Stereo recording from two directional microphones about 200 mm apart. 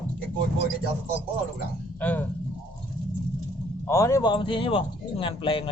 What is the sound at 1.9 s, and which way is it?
Speech, 10° left (ahead or behind).